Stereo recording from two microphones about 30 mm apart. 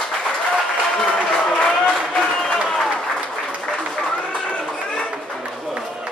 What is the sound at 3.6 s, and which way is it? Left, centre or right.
Music, centre.